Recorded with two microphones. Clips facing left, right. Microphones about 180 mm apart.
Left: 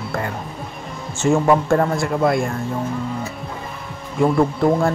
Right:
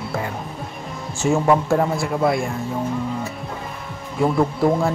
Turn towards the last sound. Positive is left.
turn(degrees=0)  # may be behind; listen again after turning